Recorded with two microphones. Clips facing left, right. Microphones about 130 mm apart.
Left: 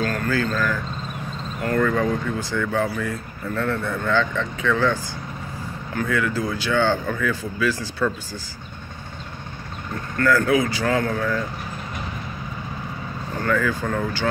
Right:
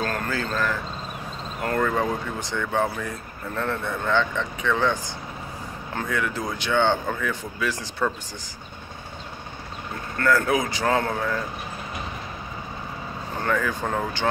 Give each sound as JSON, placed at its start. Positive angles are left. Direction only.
{"t": 0.0, "sound": "speech", "side_deg": -30}
{"t": 1.8, "sound": "speech", "side_deg": -20}
{"t": 10.1, "sound": "speech", "side_deg": -25}
{"t": 13.5, "sound": "speech", "side_deg": -20}